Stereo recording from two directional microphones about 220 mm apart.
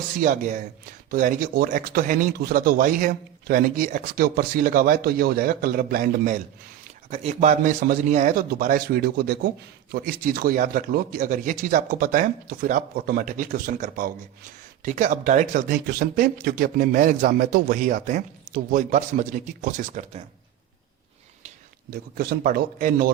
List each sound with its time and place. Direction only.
0.2 s speech: 40° right (ahead or behind)
7.1 s speech: 30° right (ahead or behind)
21.8 s speech: 45° right (ahead or behind)